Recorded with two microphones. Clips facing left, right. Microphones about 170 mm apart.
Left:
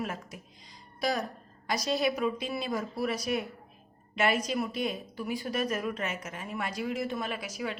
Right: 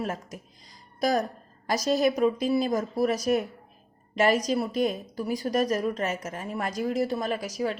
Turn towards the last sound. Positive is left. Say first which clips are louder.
# right 7 dB
turn(degrees=-40)  # may be behind; listen again after turning